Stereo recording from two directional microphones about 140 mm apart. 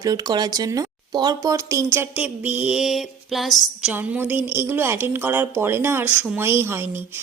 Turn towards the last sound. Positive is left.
turn(degrees=-15)  # may be behind; listen again after turning